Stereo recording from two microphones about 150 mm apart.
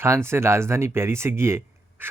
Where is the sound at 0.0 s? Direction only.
15° right (ahead or behind).